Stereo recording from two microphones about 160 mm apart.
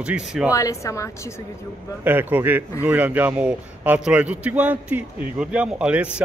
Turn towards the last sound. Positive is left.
turn(degrees=-5)  # may be behind; listen again after turning